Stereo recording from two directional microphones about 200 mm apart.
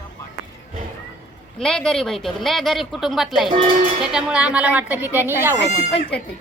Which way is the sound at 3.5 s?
30° right (ahead or behind).